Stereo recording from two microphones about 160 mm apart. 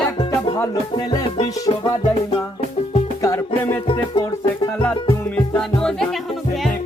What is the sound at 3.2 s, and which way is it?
Music, 15° left (ahead or behind).